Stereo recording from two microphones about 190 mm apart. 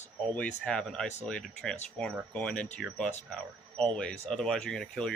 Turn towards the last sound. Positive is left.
turn(degrees=5)  # may be behind; listen again after turning